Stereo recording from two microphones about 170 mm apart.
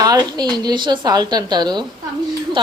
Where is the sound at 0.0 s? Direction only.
25° right (ahead or behind).